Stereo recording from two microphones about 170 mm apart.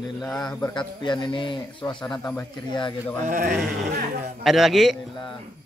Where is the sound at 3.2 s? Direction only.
50° right (ahead or behind).